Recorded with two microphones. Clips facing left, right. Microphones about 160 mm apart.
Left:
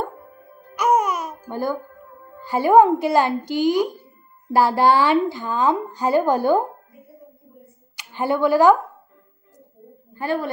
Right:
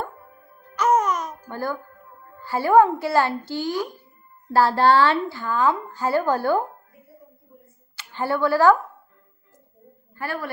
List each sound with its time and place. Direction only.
0.8 s music: 10° left (ahead or behind)
2.4 s a woman's voice: 15° left (ahead or behind)
7.9 s speech: 15° left (ahead or behind)
10.2 s a woman's voice: 20° left (ahead or behind)